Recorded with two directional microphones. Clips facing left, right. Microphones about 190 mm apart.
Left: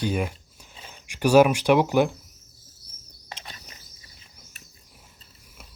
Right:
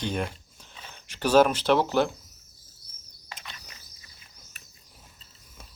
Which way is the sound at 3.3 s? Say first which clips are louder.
Left 2 dB; 30° left (ahead or behind).